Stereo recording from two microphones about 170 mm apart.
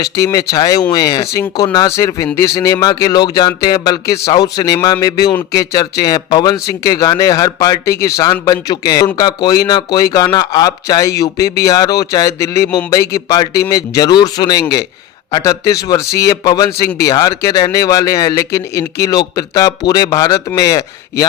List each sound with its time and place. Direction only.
0.0 s a man's voice: 20° left (ahead or behind)